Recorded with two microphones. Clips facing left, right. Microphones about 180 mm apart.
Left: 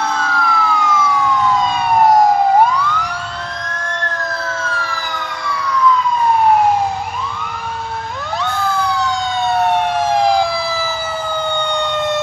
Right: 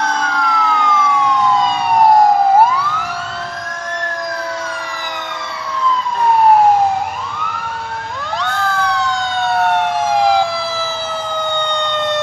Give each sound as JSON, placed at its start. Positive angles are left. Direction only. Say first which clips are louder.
{"t": 0.3, "sound": "emergency vehicle", "louder": "even", "side_deg": -20}
{"t": 2.0, "sound": "emergency vehicle", "louder": "right 1 dB", "side_deg": 0}